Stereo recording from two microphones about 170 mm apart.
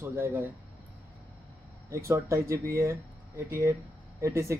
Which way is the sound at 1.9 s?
15° right (ahead or behind).